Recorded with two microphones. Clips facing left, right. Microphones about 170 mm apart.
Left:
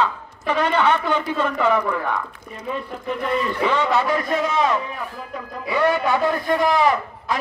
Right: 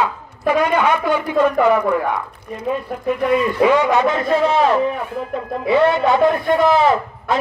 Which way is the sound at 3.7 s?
15° right (ahead or behind).